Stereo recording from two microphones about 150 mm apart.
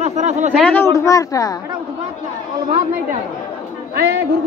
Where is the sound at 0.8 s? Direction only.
20° left (ahead or behind).